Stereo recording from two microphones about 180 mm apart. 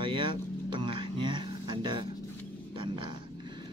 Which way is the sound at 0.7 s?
30° right (ahead or behind).